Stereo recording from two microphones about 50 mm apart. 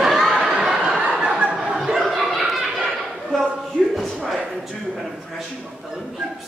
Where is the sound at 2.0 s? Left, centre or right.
Centre.